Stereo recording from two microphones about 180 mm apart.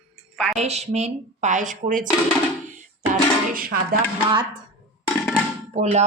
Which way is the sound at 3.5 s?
55° right (ahead or behind).